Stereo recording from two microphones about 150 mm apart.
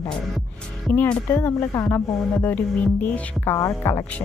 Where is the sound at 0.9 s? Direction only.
10° left (ahead or behind).